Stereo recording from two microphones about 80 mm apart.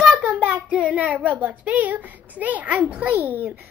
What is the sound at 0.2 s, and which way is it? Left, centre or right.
A child's voice, centre.